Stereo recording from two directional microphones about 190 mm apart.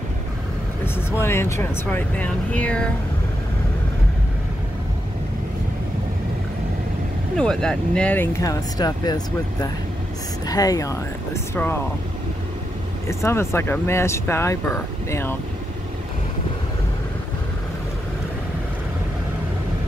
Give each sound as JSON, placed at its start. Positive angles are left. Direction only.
{"t": 1.2, "sound": "speech", "side_deg": 10}
{"t": 7.3, "sound": "speech", "side_deg": 5}
{"t": 13.1, "sound": "speech", "side_deg": 15}